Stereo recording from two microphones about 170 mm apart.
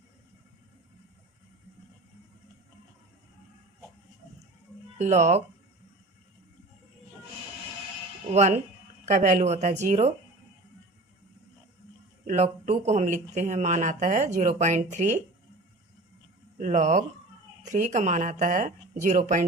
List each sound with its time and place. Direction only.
4.9 s speech: 45° right (ahead or behind)
8.3 s speech: 40° right (ahead or behind)
12.2 s speech: 45° right (ahead or behind)
16.6 s speech: 45° right (ahead or behind)